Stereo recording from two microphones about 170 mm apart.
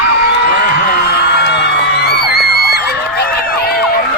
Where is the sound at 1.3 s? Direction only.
80° left.